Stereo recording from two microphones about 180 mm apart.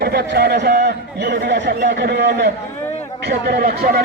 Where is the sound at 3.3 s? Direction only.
55° right (ahead or behind).